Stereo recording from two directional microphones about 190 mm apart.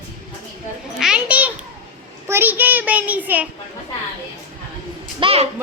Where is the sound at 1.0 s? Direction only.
5° right (ahead or behind).